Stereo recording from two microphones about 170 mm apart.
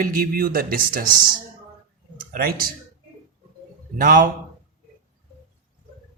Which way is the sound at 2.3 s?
60° right (ahead or behind).